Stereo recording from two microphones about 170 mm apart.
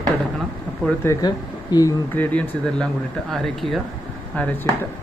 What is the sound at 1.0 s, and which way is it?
Speech, 20° left (ahead or behind).